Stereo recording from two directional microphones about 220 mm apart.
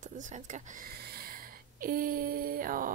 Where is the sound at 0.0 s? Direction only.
35° right (ahead or behind).